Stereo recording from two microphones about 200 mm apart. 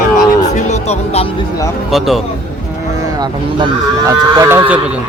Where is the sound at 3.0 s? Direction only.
20° right (ahead or behind).